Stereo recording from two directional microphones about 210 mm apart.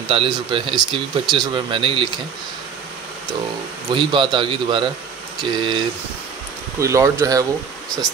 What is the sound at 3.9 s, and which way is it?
Speech, 25° right (ahead or behind).